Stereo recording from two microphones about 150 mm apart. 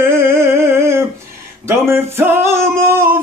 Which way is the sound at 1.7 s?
15° right (ahead or behind).